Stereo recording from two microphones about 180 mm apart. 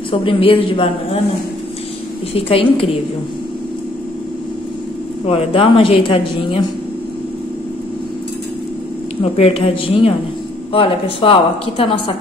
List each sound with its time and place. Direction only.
0.1 s speech: 30° left (ahead or behind)
2.3 s speech: 30° left (ahead or behind)
5.2 s speech: 30° left (ahead or behind)
9.2 s speech: 30° left (ahead or behind)